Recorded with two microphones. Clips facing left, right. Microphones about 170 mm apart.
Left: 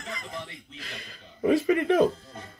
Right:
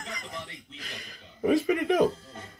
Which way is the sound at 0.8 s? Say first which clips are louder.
Even; 20° right (ahead or behind).